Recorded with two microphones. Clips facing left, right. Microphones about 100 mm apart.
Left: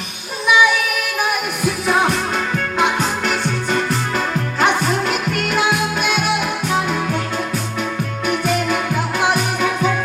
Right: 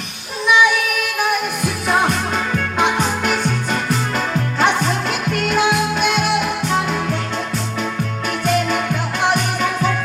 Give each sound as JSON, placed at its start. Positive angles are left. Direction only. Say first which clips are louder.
{"t": 0.4, "sound": "child singing", "louder": "even", "side_deg": 15}
{"t": 1.6, "sound": "music", "louder": "left 2 dB", "side_deg": 0}
{"t": 8.3, "sound": "music", "louder": "even", "side_deg": 5}